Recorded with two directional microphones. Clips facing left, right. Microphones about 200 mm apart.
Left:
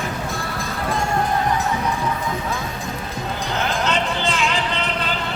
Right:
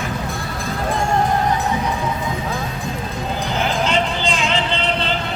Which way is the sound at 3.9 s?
15° right (ahead or behind).